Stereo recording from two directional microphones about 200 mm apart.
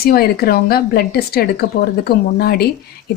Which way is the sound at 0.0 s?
50° left (ahead or behind).